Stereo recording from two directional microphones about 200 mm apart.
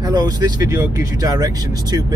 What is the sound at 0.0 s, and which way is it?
Speech, 20° right (ahead or behind).